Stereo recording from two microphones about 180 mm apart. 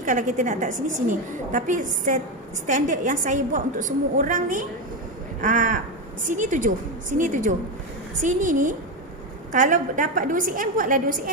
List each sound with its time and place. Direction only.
0.0 s a woman's voice: 45° right (ahead or behind)